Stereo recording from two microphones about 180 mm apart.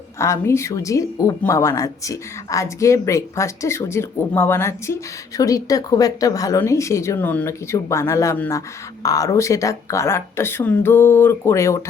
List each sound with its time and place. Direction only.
0.2 s speech: 15° left (ahead or behind)